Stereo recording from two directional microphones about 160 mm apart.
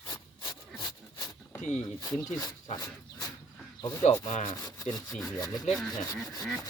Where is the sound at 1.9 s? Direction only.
25° left (ahead or behind).